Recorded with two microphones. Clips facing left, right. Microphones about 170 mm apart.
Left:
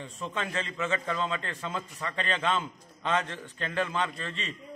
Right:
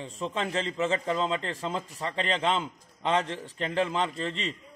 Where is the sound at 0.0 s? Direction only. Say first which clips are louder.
Right 3 dB; 30° right (ahead or behind).